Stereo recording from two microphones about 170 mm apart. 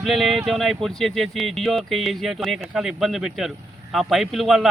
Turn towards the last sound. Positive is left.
turn(degrees=0)  # may be behind; listen again after turning